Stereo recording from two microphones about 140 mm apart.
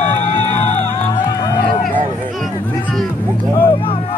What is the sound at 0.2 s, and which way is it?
Music, 55° left (ahead or behind).